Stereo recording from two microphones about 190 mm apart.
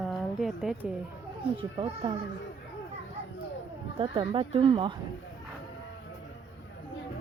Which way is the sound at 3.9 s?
30° right (ahead or behind).